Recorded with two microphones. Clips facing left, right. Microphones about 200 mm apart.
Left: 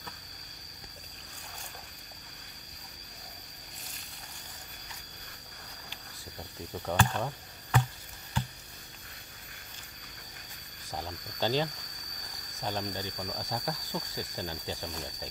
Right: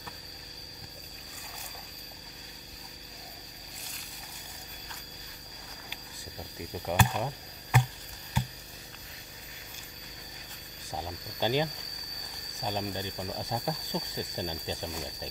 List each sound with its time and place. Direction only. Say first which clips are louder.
6.7 s speech: right 1 dB; 10° right (ahead or behind)
10.9 s speech: right 1 dB; 10° right (ahead or behind)